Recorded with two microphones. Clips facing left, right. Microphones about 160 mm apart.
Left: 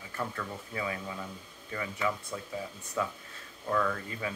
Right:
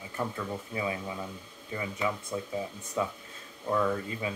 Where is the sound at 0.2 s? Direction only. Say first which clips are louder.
Right 3 dB; 15° right (ahead or behind).